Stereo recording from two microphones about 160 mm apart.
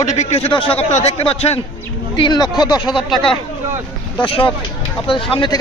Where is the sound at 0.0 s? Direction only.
45° left (ahead or behind); by 2.9 s 25° left (ahead or behind).